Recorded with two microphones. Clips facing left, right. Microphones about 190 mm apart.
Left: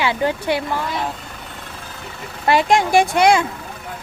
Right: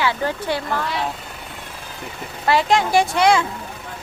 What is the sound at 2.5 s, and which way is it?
Speech, 15° left (ahead or behind).